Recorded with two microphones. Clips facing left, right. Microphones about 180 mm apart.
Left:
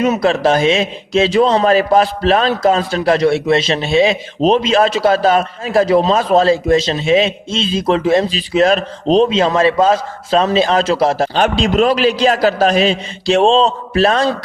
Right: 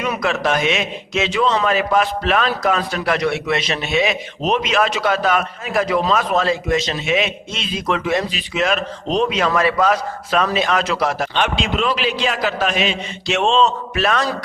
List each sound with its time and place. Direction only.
0.0 s a man's voice: 30° left (ahead or behind)
11.4 s a man's voice: 40° left (ahead or behind)